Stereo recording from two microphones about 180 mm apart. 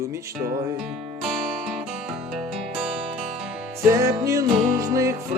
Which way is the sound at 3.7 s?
15° right (ahead or behind).